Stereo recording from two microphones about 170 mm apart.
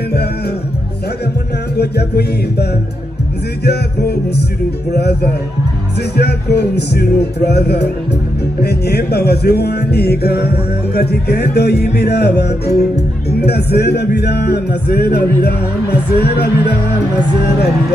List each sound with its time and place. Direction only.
1.8 s music: 75° left (ahead or behind)